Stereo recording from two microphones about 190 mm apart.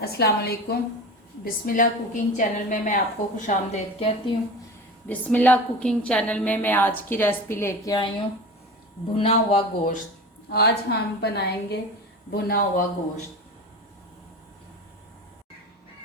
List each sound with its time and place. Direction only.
0.0 s a woman's voice: 55° left (ahead or behind); by 4.1 s 40° left (ahead or behind)
5.0 s a woman's voice: 10° left (ahead or behind)
9.1 s speech: 30° left (ahead or behind)
10.5 s a woman's voice: 60° left (ahead or behind)